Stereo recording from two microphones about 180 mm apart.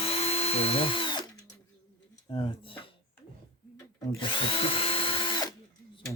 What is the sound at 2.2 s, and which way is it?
Speech, 30° left (ahead or behind).